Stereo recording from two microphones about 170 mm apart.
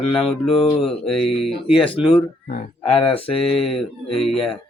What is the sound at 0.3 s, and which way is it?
Speech, 35° left (ahead or behind).